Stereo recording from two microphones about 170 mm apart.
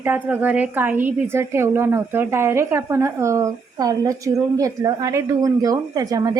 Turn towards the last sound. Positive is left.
turn(degrees=-20)  # may be behind; listen again after turning